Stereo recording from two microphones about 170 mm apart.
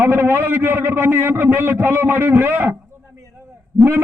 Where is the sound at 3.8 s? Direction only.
15° right (ahead or behind).